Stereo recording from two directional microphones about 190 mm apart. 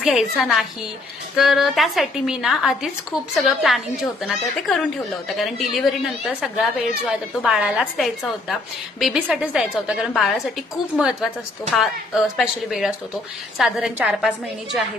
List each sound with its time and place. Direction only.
0.0 s a woman's voice: centre (ahead or behind)